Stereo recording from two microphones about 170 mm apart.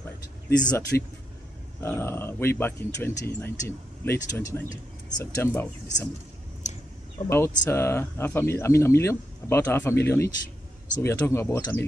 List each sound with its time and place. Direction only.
0.5 s speech: 10° left (ahead or behind)
6.6 s a sound: 45° left (ahead or behind)
7.2 s speech: 15° left (ahead or behind)